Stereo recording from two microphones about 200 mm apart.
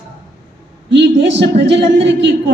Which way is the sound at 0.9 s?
60° right (ahead or behind).